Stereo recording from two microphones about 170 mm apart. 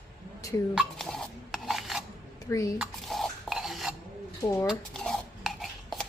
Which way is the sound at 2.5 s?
20° left (ahead or behind).